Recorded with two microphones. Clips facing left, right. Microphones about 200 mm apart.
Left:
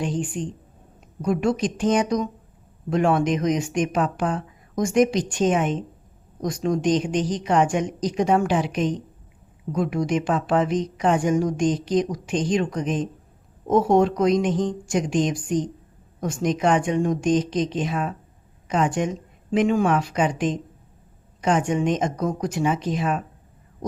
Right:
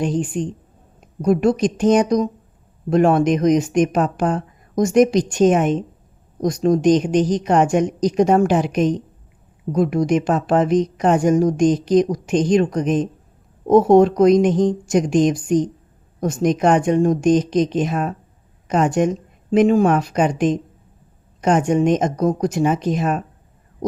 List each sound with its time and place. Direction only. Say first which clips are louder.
0.0 s speech: right 5 dB; 40° right (ahead or behind)